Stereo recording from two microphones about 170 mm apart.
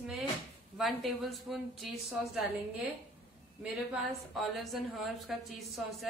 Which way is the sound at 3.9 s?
Centre (ahead or behind).